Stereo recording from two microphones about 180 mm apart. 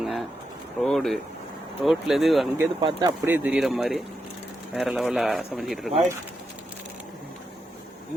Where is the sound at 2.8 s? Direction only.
25° right (ahead or behind).